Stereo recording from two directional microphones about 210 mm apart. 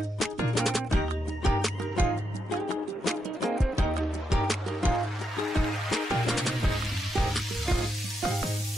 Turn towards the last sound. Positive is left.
turn(degrees=0)  # may be behind; listen again after turning